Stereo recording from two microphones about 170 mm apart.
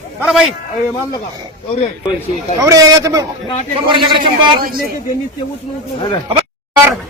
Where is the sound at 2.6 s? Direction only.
20° right (ahead or behind).